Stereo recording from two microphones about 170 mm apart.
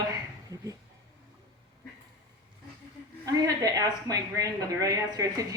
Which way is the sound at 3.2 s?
20° right (ahead or behind).